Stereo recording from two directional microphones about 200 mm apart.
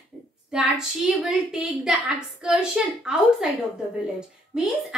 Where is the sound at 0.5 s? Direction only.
5° right (ahead or behind).